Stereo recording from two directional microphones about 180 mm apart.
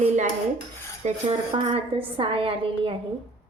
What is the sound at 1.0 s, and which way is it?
A woman's voice, 30° right (ahead or behind).